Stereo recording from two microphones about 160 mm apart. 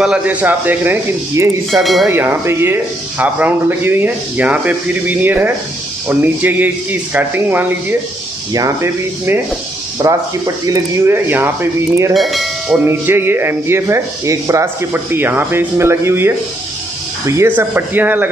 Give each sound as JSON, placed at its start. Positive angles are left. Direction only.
{"t": 0.0, "sound": "speech", "side_deg": -5}
{"t": 1.7, "sound": "speech", "side_deg": 0}
{"t": 2.0, "sound": "speech", "side_deg": -15}
{"t": 12.1, "sound": "speech", "side_deg": 0}
{"t": 12.8, "sound": "speech", "side_deg": -15}
{"t": 17.4, "sound": "speech", "side_deg": -15}